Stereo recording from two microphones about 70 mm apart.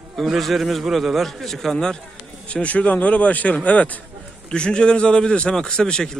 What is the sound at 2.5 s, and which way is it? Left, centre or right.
A man's voice, centre.